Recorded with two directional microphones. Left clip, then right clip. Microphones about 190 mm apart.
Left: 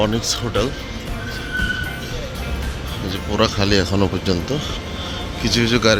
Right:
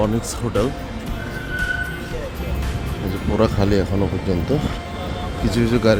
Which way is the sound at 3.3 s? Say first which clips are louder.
Left 1 dB; 15° right (ahead or behind).